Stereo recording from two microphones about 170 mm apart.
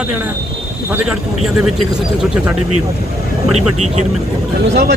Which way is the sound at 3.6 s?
40° right (ahead or behind).